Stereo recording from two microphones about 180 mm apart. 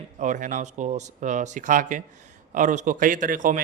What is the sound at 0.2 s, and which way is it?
A man's voice, 45° right (ahead or behind).